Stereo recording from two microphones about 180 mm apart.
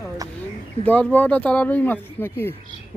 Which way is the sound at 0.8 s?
10° left (ahead or behind).